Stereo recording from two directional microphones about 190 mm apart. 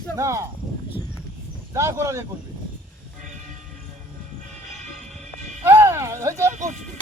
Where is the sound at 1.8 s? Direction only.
15° right (ahead or behind).